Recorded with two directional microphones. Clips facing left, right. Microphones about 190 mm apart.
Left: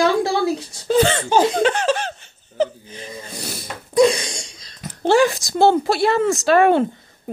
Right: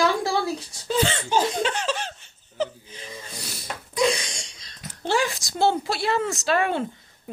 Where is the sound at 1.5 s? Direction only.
65° left (ahead or behind).